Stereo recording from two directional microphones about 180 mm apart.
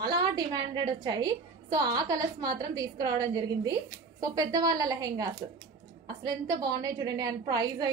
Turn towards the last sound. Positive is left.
turn(degrees=-20)  # may be behind; listen again after turning